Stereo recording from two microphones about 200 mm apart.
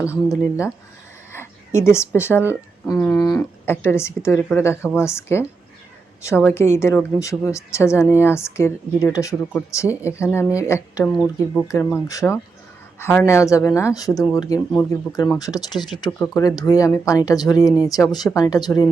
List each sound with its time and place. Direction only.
0.0 s speech: 15° left (ahead or behind)
11.1 s speech: centre (ahead or behind)
11.7 s speech: 10° left (ahead or behind)